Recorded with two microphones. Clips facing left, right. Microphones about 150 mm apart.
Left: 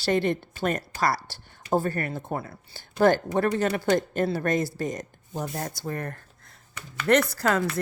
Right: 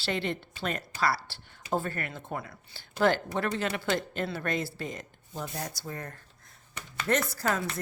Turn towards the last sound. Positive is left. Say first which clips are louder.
# left 6 dB
turn(degrees=75)  # may be behind; listen again after turning